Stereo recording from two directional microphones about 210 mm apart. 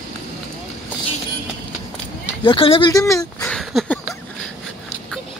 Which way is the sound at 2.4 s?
25° left (ahead or behind).